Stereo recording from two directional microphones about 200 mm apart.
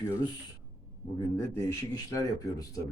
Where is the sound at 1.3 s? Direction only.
15° left (ahead or behind).